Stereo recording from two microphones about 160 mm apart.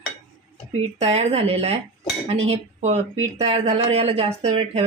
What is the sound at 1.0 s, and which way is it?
Speech, 40° right (ahead or behind).